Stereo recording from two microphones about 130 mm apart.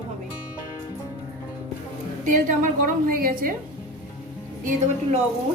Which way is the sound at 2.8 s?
90° right.